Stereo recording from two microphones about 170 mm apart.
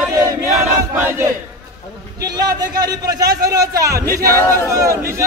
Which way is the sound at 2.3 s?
20° right (ahead or behind).